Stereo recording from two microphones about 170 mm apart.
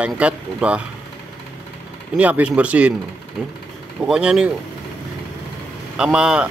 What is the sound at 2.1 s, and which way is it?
A man's voice, 10° right (ahead or behind).